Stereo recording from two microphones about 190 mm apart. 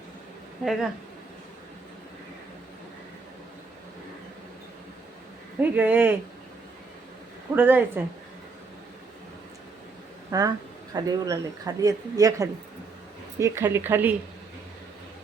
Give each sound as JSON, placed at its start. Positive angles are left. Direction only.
{"t": 0.6, "sound": "speech", "side_deg": 0}
{"t": 5.5, "sound": "speech", "side_deg": -10}
{"t": 7.5, "sound": "speech", "side_deg": -10}
{"t": 10.3, "sound": "speech", "side_deg": -20}